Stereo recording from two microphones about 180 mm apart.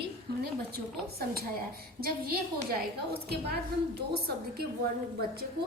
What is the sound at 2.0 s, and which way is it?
A woman's voice, 55° right (ahead or behind).